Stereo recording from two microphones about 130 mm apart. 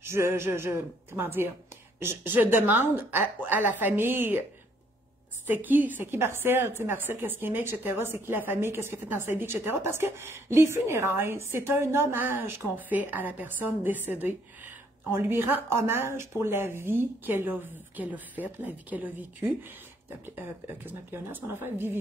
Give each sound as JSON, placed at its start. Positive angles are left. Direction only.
{"t": 0.0, "sound": "a woman's voice", "side_deg": -20}
{"t": 5.5, "sound": "a woman's voice", "side_deg": -15}